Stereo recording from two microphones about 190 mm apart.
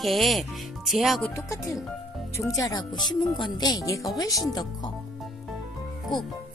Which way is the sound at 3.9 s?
Centre (ahead or behind).